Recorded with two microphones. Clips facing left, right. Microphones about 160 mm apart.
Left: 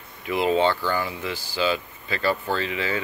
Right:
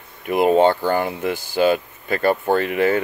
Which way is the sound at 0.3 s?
50° right (ahead or behind).